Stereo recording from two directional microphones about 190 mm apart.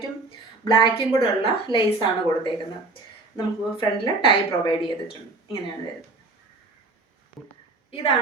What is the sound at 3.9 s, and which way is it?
A woman's voice, 25° left (ahead or behind).